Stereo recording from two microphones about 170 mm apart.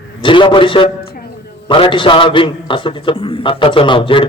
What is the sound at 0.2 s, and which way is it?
A man's voice, 30° left (ahead or behind).